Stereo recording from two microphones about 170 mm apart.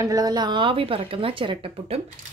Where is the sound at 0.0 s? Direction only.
20° right (ahead or behind).